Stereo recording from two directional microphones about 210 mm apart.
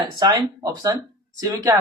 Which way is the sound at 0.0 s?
20° right (ahead or behind).